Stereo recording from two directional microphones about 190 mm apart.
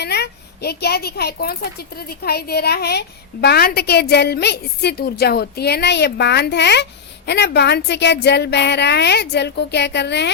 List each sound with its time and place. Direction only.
0.0 s a woman's voice: 60° left (ahead or behind)